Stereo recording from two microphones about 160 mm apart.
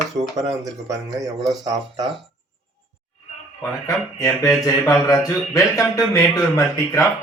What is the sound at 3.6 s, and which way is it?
Speech, 20° left (ahead or behind).